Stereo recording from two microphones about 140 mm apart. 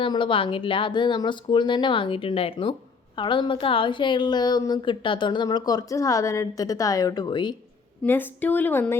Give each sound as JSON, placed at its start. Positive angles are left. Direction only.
{"t": 0.0, "sound": "a woman's voice", "side_deg": 35}
{"t": 8.0, "sound": "a woman's voice", "side_deg": 15}